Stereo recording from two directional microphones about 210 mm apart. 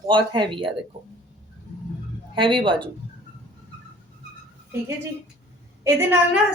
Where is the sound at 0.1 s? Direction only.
20° right (ahead or behind).